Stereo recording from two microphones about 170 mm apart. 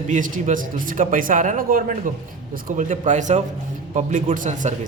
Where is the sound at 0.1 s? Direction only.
50° right (ahead or behind).